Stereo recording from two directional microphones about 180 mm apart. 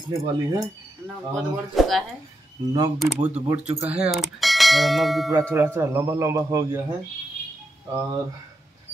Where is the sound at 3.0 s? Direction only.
10° right (ahead or behind).